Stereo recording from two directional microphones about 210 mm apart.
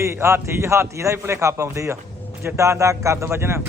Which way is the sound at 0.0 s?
15° right (ahead or behind).